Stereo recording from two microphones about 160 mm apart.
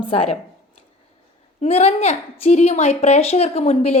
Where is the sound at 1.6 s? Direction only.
40° left (ahead or behind).